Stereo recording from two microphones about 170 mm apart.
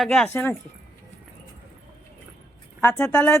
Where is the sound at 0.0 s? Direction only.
Centre (ahead or behind).